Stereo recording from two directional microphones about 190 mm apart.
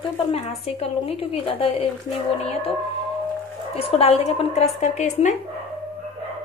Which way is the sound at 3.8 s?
30° left (ahead or behind).